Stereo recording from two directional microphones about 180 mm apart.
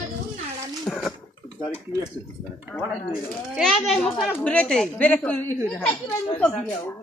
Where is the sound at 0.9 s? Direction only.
10° left (ahead or behind).